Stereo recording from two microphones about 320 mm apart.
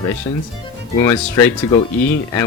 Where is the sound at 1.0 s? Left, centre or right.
Centre.